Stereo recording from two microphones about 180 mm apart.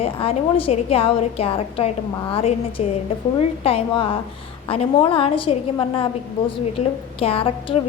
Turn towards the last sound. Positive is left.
turn(degrees=30)  # may be behind; listen again after turning